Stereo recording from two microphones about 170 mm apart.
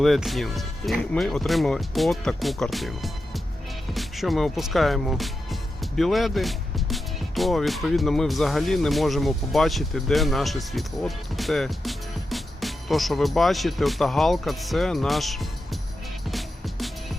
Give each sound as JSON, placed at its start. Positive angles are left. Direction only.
{"t": 0.0, "sound": "speech", "side_deg": 0}
{"t": 16.3, "sound": "music", "side_deg": 0}